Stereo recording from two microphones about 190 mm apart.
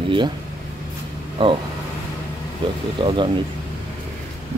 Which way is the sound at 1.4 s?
25° right (ahead or behind).